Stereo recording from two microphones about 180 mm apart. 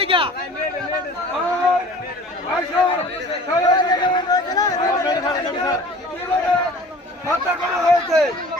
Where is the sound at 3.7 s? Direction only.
25° left (ahead or behind).